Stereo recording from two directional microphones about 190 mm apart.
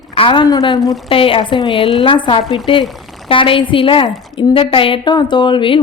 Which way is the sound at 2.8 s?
Centre (ahead or behind).